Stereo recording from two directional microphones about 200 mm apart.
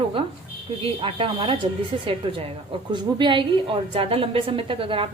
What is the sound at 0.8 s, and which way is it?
A woman's voice, 25° right (ahead or behind).